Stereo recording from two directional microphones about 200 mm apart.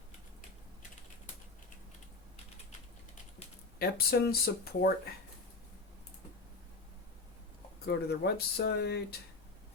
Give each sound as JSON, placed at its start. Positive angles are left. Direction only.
{"t": 3.8, "sound": "speech", "side_deg": 50}
{"t": 7.9, "sound": "speech", "side_deg": 55}